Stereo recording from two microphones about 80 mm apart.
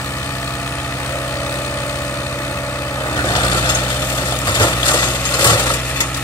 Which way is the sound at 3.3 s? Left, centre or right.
Left.